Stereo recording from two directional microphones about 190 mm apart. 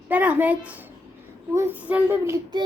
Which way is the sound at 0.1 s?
10° right (ahead or behind).